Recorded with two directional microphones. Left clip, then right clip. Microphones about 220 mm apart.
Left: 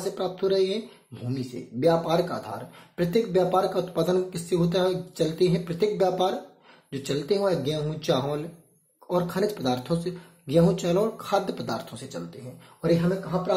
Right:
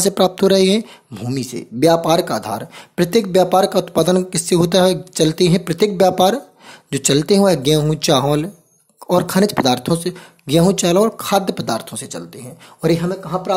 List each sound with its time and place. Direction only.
0.1 s speech: 45° right (ahead or behind)